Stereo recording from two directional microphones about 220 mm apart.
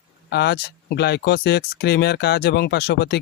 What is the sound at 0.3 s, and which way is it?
Speech, 50° left (ahead or behind).